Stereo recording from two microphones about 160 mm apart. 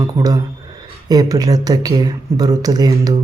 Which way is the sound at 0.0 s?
25° right (ahead or behind).